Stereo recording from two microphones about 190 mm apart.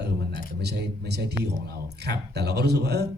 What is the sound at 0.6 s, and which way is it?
Speech, 60° right (ahead or behind).